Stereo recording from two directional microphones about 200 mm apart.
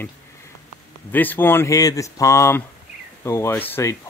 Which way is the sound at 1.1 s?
10° left (ahead or behind).